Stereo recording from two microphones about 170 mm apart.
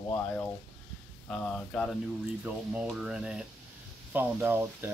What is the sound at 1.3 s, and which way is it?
Speech, 5° left (ahead or behind).